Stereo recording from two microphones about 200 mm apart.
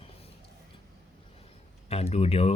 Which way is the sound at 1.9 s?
30° left (ahead or behind).